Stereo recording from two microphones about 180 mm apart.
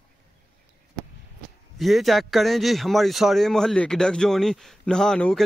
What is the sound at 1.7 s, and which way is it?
A man's voice, centre (ahead or behind).